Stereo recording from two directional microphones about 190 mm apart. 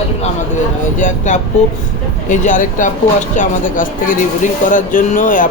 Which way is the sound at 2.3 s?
45° left (ahead or behind).